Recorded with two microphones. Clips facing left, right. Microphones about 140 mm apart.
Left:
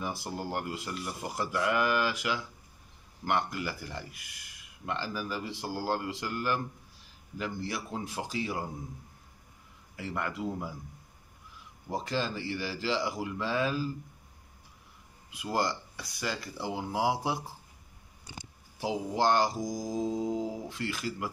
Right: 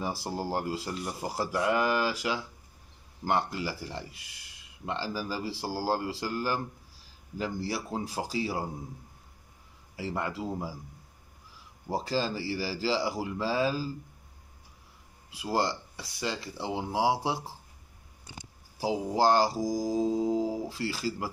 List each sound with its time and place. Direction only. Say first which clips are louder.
0.0 s speech: right 3 dB; 35° right (ahead or behind)
9.9 s speech: right 2 dB; 30° right (ahead or behind)
15.3 s speech: right 2 dB; 30° right (ahead or behind)
18.8 s speech: right 3 dB; 35° right (ahead or behind)